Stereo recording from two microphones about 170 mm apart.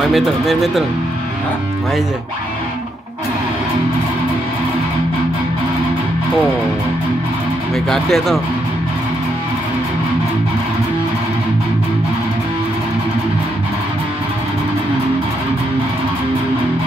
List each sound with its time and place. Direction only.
0.0 s speech: centre (ahead or behind)
7.7 s speech: centre (ahead or behind)